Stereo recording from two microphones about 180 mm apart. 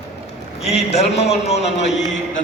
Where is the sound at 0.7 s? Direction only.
35° left (ahead or behind).